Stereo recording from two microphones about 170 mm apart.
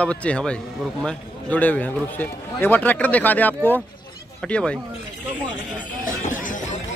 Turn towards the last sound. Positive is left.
turn(degrees=50)  # may be behind; listen again after turning